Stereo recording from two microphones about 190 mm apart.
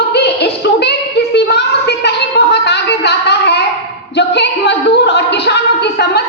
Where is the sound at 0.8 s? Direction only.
60° left (ahead or behind).